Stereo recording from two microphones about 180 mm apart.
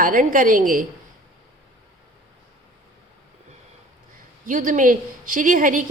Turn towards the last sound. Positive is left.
turn(degrees=-50)  # may be behind; listen again after turning